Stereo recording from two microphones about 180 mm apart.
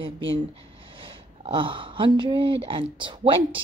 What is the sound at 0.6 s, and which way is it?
A woman's voice, 30° right (ahead or behind).